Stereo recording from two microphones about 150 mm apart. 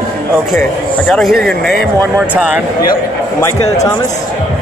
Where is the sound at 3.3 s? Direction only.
20° left (ahead or behind).